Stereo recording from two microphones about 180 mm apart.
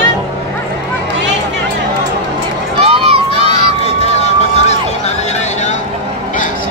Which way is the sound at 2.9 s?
30° right (ahead or behind).